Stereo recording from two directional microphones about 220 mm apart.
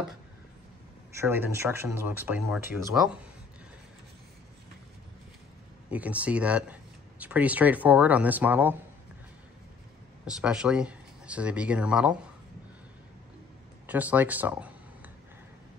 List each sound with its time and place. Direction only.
1.1 s speech: 10° right (ahead or behind)
5.9 s speech: 5° right (ahead or behind)
10.2 s speech: 5° right (ahead or behind)
13.8 s speech: 5° right (ahead or behind)